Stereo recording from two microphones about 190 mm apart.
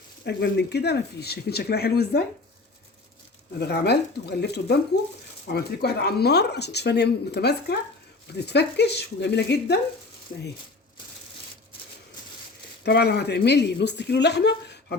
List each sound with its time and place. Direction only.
0.3 s speech: 60° left (ahead or behind)
3.6 s speech: 60° left (ahead or behind)
12.8 s speech: 60° left (ahead or behind)